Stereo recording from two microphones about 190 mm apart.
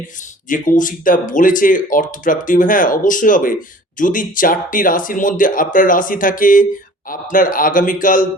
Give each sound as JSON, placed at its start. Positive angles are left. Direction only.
{"t": 0.4, "sound": "speech", "side_deg": 45}